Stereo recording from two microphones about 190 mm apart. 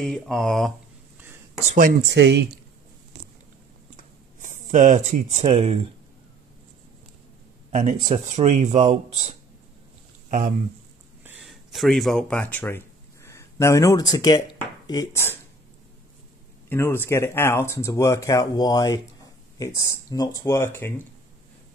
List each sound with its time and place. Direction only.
0.0 s speech: 5° left (ahead or behind)
2.0 s speech: 65° right (ahead or behind)
3.9 s a sound: 40° right (ahead or behind)
7.7 s speech: 35° right (ahead or behind)
11.2 s speech: 5° right (ahead or behind); by 15.3 s 15° left (ahead or behind)
16.6 s speech: 10° left (ahead or behind)